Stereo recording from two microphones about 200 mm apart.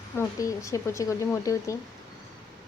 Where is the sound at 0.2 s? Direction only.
15° left (ahead or behind).